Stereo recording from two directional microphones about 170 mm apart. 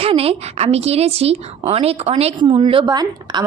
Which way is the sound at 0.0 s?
35° right (ahead or behind).